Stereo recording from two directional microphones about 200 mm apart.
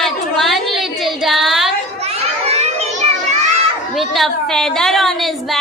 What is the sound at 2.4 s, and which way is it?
Children playing, 35° right (ahead or behind).